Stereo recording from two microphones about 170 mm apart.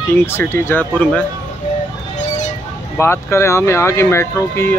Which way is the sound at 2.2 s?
45° left (ahead or behind).